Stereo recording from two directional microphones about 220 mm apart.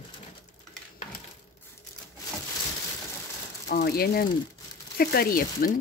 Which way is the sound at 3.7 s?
45° left (ahead or behind).